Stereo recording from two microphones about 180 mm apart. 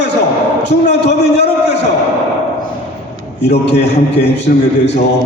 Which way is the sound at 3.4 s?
70° left (ahead or behind).